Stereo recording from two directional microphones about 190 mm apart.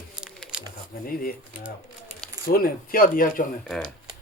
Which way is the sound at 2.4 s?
50° left (ahead or behind).